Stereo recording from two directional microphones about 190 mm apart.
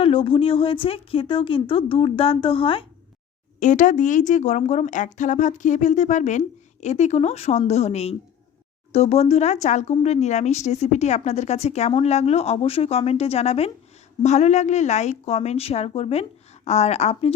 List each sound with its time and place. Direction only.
0.0 s speech: 30° left (ahead or behind)
3.6 s a woman's voice: 40° left (ahead or behind)